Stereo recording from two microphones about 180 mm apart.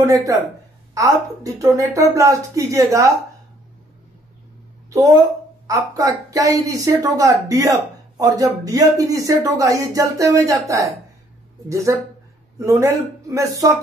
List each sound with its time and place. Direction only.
0.0 s a man's voice: 15° right (ahead or behind)
4.8 s a sound: 20° right (ahead or behind)
5.7 s a woman's voice: 20° right (ahead or behind)